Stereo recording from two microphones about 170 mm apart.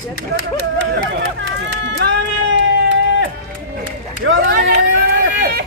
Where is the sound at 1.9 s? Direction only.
80° right.